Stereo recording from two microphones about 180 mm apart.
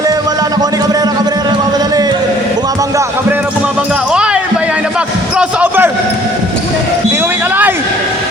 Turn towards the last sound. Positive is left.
turn(degrees=-10)  # may be behind; listen again after turning